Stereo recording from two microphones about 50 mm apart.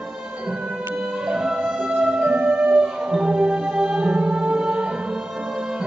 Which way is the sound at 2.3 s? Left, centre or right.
Right.